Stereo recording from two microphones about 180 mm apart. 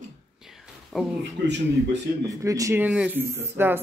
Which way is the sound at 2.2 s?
20° right (ahead or behind).